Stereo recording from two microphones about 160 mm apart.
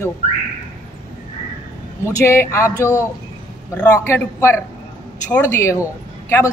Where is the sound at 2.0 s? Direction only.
15° left (ahead or behind).